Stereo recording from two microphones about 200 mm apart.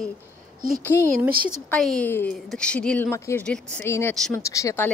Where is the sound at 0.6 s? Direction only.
45° right (ahead or behind).